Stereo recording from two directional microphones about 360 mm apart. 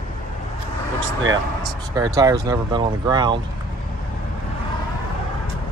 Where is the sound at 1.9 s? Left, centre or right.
Centre.